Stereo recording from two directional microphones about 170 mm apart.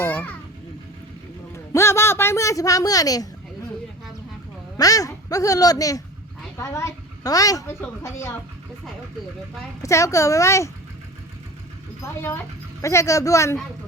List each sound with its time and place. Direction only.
0.0 s a sound: 10° left (ahead or behind)
1.5 s a man's voice: 15° left (ahead or behind)
4.8 s a woman's voice: 20° left (ahead or behind)
9.8 s a woman's voice: 20° left (ahead or behind)
12.8 s a woman's voice: 15° left (ahead or behind)